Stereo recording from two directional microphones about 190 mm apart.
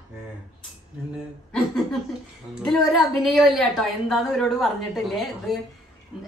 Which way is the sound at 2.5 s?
Centre (ahead or behind).